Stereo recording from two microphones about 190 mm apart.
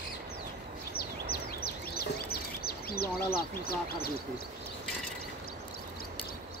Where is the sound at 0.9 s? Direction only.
55° left (ahead or behind).